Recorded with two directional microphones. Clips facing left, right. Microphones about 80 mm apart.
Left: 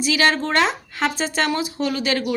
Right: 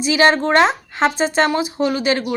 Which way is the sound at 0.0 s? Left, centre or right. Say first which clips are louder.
Right 5 dB; right.